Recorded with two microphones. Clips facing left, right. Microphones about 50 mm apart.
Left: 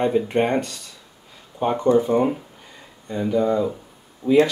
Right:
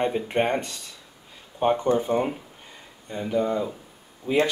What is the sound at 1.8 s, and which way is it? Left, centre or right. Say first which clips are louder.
Speech: left 5 dB; centre.